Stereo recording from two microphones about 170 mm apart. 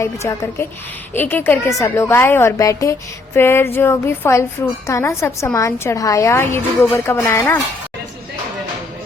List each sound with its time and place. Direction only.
0.0 s a woman's voice: 15° left (ahead or behind)